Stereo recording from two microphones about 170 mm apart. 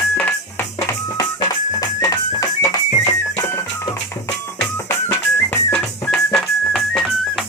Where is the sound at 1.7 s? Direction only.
20° left (ahead or behind).